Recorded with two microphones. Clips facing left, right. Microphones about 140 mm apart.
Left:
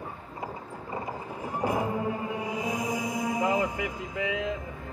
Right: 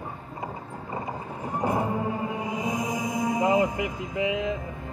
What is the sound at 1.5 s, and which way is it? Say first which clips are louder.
Music: right 2 dB; 20° right (ahead or behind).